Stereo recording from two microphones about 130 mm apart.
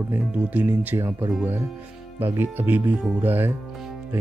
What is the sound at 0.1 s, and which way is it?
Speech, 10° right (ahead or behind).